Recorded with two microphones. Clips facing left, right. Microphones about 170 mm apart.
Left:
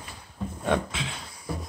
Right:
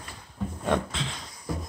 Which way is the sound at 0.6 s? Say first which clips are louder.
Left 1 dB; 5° left (ahead or behind).